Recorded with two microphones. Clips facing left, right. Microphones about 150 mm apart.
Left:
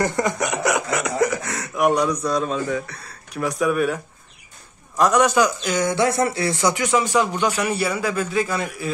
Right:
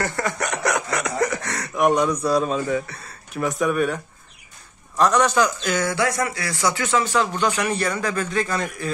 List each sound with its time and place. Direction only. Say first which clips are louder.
0.0 s a man's voice: left 4 dB; 15° left (ahead or behind)